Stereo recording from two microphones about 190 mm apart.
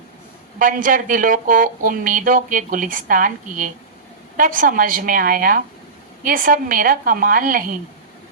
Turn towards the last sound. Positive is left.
turn(degrees=-45)  # may be behind; listen again after turning